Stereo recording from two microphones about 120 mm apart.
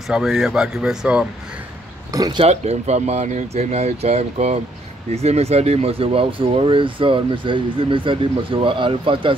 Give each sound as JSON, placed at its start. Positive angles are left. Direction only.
{"t": 0.1, "sound": "speech", "side_deg": -5}
{"t": 2.1, "sound": "speech", "side_deg": -35}
{"t": 2.4, "sound": "speech", "side_deg": -65}